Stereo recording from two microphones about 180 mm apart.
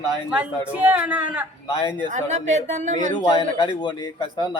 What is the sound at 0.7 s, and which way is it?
Speech, 10° right (ahead or behind).